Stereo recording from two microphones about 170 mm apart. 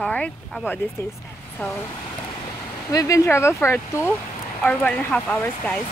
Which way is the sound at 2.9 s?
20° left (ahead or behind).